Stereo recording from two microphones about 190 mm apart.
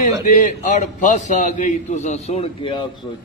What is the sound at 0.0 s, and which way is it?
A man's voice, 45° left (ahead or behind).